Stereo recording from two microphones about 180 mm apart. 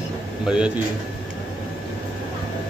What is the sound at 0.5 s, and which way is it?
Speech, 5° right (ahead or behind).